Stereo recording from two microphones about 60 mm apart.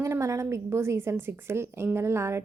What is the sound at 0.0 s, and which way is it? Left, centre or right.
A woman's voice, right.